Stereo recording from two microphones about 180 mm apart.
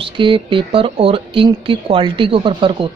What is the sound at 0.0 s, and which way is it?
Speech, 30° right (ahead or behind).